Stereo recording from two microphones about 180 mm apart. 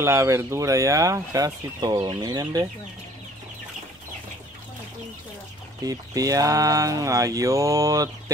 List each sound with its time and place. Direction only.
0.0 s speech: 15° right (ahead or behind)
5.9 s speech: 20° right (ahead or behind)